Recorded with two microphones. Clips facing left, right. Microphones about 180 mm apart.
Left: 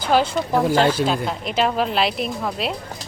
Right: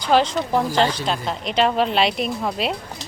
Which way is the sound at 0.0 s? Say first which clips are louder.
Right 1 dB; 5° left (ahead or behind).